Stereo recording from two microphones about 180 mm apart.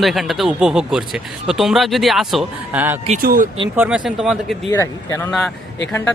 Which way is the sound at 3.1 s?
50° right (ahead or behind).